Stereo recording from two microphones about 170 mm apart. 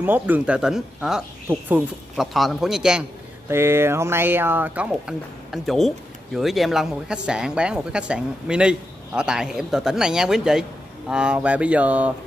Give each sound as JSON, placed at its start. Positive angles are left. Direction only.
{"t": 0.0, "sound": "a man's voice", "side_deg": -10}